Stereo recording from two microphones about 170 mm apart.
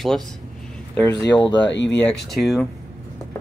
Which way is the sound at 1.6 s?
90° left.